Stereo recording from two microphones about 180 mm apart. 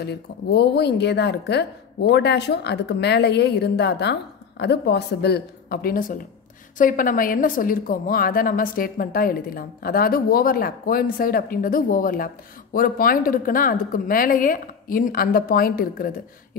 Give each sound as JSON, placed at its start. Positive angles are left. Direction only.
{"t": 0.0, "sound": "a woman's voice", "side_deg": 65}